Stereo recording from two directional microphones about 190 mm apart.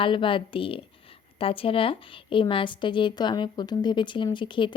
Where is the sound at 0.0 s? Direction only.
25° left (ahead or behind).